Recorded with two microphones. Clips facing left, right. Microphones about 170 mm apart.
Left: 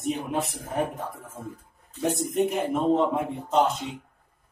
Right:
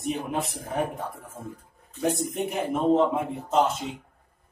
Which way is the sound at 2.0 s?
Centre (ahead or behind).